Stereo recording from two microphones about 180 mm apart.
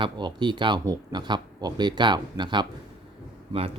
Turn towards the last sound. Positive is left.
turn(degrees=-30)  # may be behind; listen again after turning